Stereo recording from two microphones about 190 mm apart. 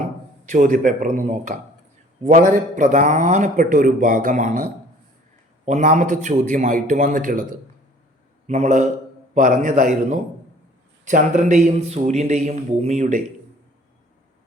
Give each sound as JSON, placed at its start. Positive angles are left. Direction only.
{"t": 0.4, "sound": "a man's voice", "side_deg": -45}